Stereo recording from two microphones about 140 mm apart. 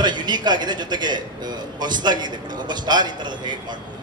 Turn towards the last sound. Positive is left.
turn(degrees=-30)  # may be behind; listen again after turning